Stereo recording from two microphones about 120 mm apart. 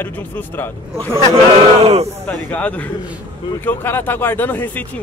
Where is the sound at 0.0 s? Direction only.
15° left (ahead or behind).